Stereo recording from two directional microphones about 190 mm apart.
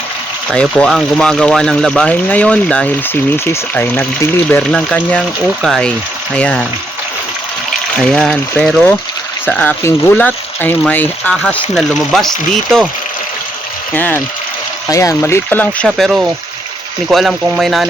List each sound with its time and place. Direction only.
0.5 s speech: 5° left (ahead or behind)
7.9 s speech: 5° left (ahead or behind)
13.9 s speech: 10° left (ahead or behind)